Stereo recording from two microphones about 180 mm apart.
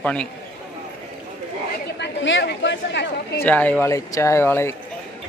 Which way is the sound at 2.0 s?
85° left.